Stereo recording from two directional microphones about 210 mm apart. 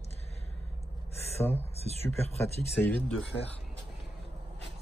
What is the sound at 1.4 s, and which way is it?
Speech, 10° left (ahead or behind).